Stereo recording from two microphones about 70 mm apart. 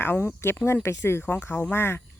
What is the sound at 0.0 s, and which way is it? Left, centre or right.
Speech, left.